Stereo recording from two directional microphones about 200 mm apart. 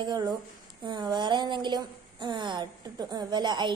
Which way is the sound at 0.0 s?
20° right (ahead or behind).